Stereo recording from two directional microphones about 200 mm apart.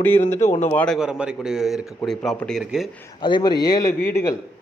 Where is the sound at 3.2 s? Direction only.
20° left (ahead or behind).